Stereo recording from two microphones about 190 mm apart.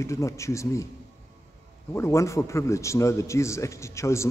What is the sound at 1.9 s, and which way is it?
A man's voice, 15° left (ahead or behind).